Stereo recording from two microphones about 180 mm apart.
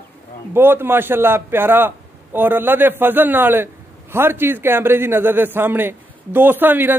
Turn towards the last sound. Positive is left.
turn(degrees=-10)  # may be behind; listen again after turning